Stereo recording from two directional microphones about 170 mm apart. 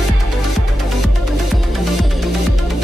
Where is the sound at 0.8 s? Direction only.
Centre (ahead or behind).